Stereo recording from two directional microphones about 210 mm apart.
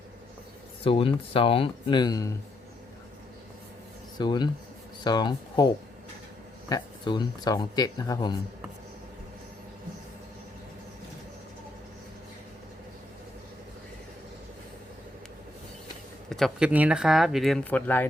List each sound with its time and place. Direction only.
0.9 s speech: 25° left (ahead or behind)
4.2 s speech: 20° left (ahead or behind)
16.3 s speech: centre (ahead or behind)